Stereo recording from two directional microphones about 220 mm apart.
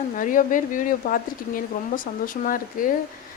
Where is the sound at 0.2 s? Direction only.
35° left (ahead or behind).